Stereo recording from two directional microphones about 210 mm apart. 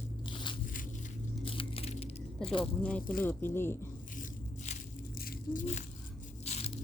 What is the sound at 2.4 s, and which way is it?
Speech, 25° left (ahead or behind).